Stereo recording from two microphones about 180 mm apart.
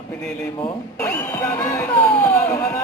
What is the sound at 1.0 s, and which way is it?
Speech, 15° left (ahead or behind).